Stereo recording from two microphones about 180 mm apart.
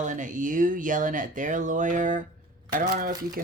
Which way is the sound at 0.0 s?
45° right (ahead or behind).